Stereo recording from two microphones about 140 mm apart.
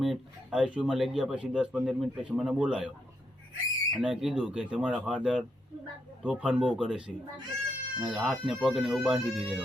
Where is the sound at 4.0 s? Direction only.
5° right (ahead or behind).